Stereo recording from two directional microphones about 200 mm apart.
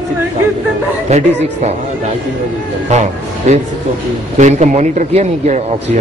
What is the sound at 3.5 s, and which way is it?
A man's voice, 35° right (ahead or behind).